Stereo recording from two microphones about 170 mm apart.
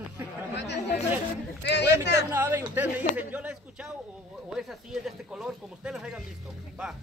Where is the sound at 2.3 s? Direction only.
10° right (ahead or behind).